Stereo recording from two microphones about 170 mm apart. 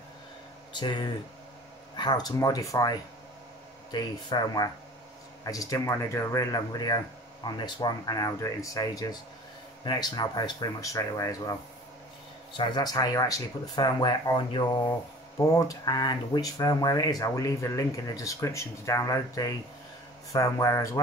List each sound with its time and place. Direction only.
0.7 s speech: 25° left (ahead or behind)
12.5 s speech: 25° left (ahead or behind)